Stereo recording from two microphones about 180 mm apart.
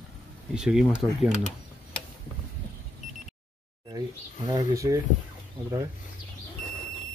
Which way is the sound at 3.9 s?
20° right (ahead or behind).